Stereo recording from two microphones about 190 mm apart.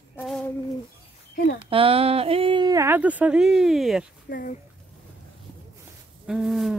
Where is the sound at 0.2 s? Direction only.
5° left (ahead or behind).